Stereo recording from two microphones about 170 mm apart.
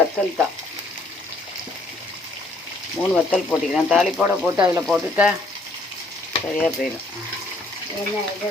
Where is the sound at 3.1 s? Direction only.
5° left (ahead or behind).